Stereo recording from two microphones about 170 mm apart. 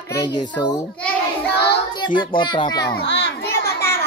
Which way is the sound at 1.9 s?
25° left (ahead or behind).